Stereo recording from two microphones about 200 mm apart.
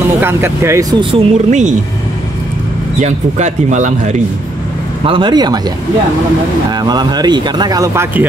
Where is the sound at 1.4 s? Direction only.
35° right (ahead or behind).